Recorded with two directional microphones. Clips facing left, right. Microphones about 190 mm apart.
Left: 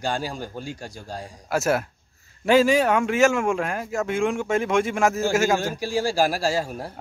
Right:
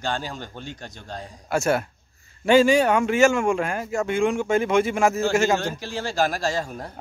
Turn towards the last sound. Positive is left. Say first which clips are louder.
# left 2 dB
turn(degrees=5)  # may be behind; listen again after turning